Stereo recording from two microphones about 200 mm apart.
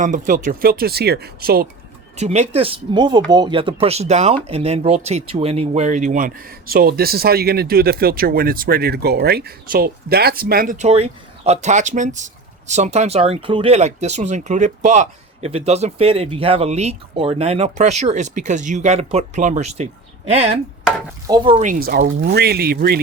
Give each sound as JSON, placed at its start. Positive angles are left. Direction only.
{"t": 0.0, "sound": "speech", "side_deg": -40}
{"t": 2.1, "sound": "speech", "side_deg": -35}
{"t": 21.6, "sound": "speech", "side_deg": -45}